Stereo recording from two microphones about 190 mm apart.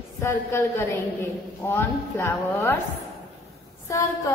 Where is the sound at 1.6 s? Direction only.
15° left (ahead or behind).